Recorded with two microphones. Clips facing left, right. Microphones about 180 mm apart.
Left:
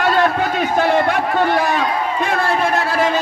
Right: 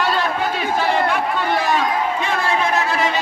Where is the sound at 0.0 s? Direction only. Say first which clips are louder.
Left 4 dB; 50° left (ahead or behind).